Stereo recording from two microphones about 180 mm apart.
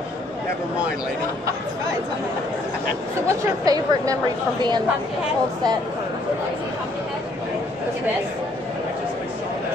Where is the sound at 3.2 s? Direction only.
20° right (ahead or behind).